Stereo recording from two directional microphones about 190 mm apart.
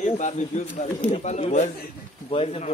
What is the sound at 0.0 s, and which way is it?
A man's voice, 40° left (ahead or behind).